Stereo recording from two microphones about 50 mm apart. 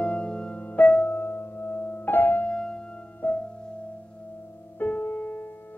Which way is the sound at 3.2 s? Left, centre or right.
Left.